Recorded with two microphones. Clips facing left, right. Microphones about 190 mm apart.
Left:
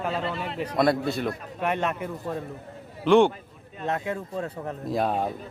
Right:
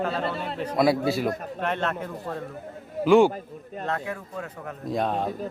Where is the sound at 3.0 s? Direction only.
5° right (ahead or behind).